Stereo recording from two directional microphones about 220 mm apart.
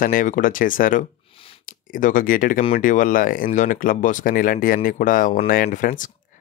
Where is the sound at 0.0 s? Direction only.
40° left (ahead or behind).